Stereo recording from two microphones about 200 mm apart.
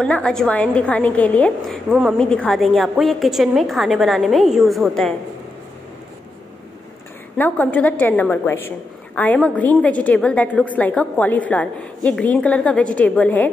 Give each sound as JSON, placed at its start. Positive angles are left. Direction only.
{"t": 0.0, "sound": "a woman's voice", "side_deg": 5}
{"t": 7.3, "sound": "a woman's voice", "side_deg": 10}